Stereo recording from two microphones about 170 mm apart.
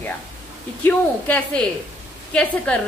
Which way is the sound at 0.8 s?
10° left (ahead or behind).